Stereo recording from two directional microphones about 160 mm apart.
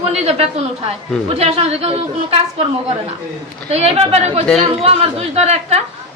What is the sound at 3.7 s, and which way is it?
A woman's voice, 40° right (ahead or behind).